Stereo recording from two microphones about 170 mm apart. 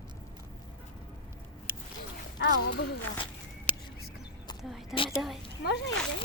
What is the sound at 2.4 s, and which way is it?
Speech, 90° left.